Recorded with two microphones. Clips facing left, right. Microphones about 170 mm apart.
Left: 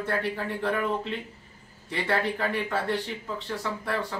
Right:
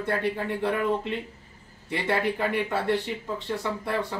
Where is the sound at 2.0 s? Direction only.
20° right (ahead or behind).